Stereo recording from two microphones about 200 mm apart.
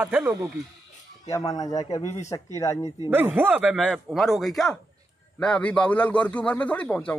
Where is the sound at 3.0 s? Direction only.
10° right (ahead or behind); by 7.2 s 5° left (ahead or behind).